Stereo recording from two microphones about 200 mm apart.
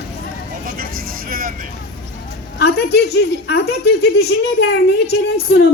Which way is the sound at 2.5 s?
55° left (ahead or behind).